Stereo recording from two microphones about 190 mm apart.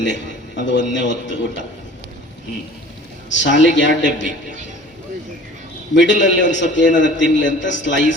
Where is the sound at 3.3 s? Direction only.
70° left (ahead or behind).